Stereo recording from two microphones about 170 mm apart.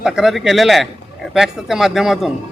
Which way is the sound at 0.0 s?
Centre (ahead or behind).